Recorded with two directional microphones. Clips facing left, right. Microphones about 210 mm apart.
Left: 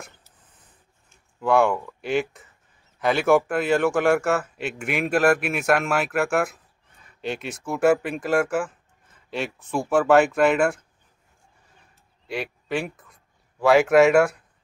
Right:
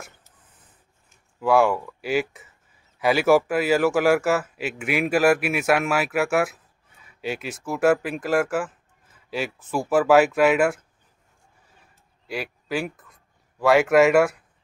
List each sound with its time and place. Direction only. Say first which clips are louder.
1.4 s speech: right 1 dB; 5° right (ahead or behind)
12.3 s speech: left 1 dB; centre (ahead or behind)